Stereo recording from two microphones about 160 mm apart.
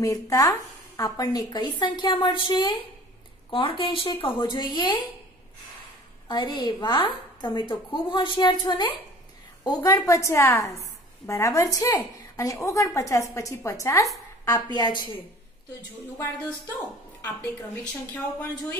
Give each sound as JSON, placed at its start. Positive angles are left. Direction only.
{"t": 0.0, "sound": "a woman's voice", "side_deg": 20}
{"t": 6.2, "sound": "a woman's voice", "side_deg": 30}
{"t": 18.1, "sound": "speech", "side_deg": 10}